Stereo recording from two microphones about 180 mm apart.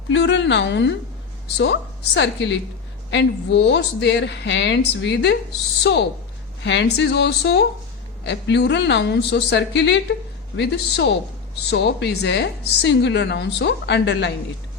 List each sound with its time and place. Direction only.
0.1 s a woman's voice: 90° left; by 6.1 s 70° left (ahead or behind)
6.6 s a woman's voice: 80° left